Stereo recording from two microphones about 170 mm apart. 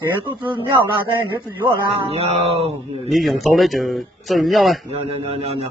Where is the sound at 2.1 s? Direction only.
35° right (ahead or behind).